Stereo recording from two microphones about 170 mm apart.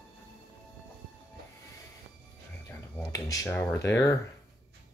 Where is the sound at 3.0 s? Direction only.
20° left (ahead or behind).